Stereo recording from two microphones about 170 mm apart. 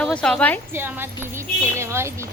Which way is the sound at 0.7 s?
10° right (ahead or behind).